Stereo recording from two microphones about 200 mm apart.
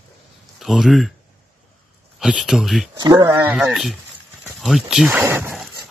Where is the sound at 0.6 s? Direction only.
Centre (ahead or behind).